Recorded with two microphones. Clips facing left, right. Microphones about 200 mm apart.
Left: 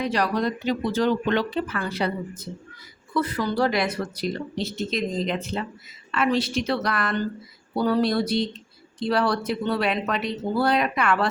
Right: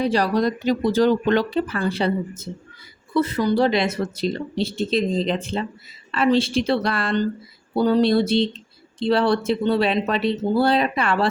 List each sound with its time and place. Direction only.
0.0 s speech: 30° right (ahead or behind)